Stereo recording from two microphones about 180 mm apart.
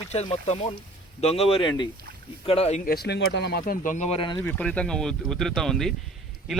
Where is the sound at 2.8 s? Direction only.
60° left (ahead or behind).